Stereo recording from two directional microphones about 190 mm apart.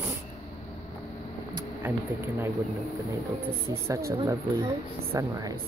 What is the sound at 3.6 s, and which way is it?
Speech, 15° right (ahead or behind).